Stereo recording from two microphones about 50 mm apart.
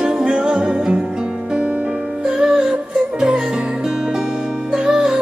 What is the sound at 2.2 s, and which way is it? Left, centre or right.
Music, centre.